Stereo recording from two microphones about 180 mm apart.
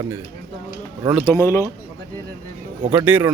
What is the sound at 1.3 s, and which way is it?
Speech, 15° left (ahead or behind).